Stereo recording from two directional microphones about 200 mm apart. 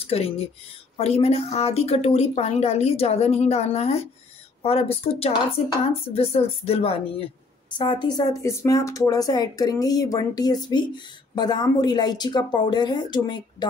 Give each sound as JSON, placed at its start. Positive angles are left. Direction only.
{"t": 0.0, "sound": "a woman's voice", "side_deg": 30}